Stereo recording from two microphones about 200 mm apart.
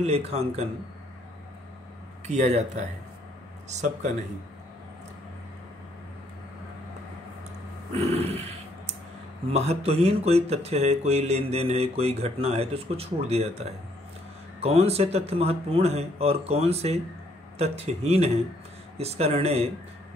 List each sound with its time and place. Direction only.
0.0 s speech: 30° right (ahead or behind)
2.2 s speech: 35° right (ahead or behind)
8.1 s a sound: 30° right (ahead or behind)
9.5 s speech: 30° right (ahead or behind)